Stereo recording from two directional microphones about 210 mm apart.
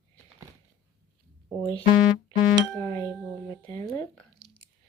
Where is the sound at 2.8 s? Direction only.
15° left (ahead or behind).